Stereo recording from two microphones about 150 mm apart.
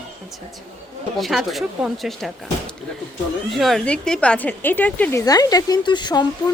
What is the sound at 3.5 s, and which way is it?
A woman's voice, centre (ahead or behind).